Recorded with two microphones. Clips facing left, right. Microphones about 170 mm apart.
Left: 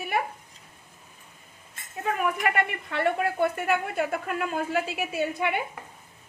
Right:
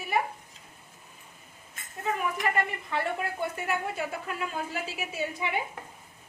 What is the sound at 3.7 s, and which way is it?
A woman's voice, 60° left (ahead or behind).